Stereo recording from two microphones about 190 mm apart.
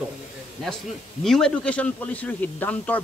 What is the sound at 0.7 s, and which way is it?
A man's voice, centre (ahead or behind).